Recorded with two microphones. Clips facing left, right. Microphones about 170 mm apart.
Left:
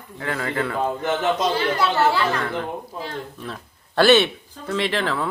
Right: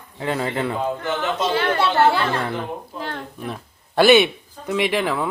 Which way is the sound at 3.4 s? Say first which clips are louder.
Right 3 dB; 15° right (ahead or behind).